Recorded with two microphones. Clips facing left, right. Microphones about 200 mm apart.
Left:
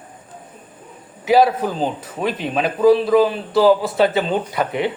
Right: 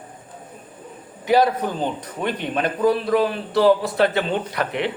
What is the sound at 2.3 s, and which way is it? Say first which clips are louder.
Speech: left 3 dB; 90° left.